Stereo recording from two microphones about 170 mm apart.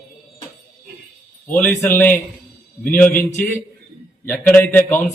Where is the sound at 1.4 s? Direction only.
5° left (ahead or behind).